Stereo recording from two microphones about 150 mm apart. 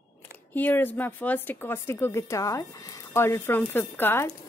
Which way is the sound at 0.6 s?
10° left (ahead or behind).